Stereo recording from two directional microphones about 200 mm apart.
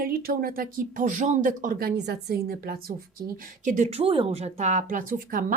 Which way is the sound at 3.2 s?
40° right (ahead or behind).